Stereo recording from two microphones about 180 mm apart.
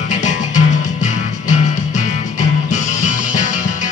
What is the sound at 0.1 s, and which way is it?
Music, 45° left (ahead or behind).